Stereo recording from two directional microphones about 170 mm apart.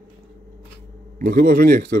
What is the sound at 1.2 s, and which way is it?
Speech, 60° right (ahead or behind).